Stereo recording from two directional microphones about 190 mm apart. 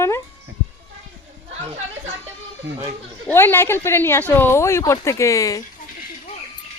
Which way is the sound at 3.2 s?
10° left (ahead or behind).